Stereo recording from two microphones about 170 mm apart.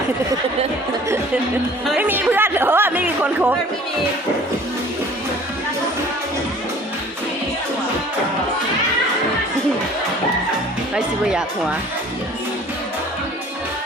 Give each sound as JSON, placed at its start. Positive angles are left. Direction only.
{"t": 1.9, "sound": "speech", "side_deg": -10}
{"t": 10.9, "sound": "speech", "side_deg": -5}